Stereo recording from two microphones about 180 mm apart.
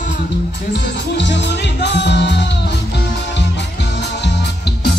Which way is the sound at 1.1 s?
80° left.